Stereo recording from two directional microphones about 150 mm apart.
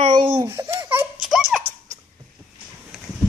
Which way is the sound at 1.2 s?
Centre (ahead or behind).